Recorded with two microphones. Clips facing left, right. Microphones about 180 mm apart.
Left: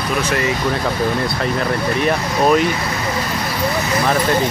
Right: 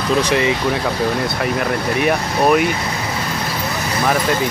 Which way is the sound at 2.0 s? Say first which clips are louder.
Right 1 dB; 10° right (ahead or behind).